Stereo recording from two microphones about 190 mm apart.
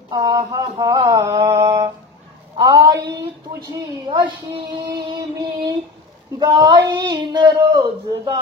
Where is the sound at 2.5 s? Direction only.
20° right (ahead or behind).